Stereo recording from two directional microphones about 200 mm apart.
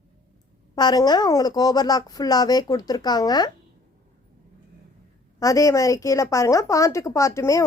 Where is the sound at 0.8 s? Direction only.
20° left (ahead or behind).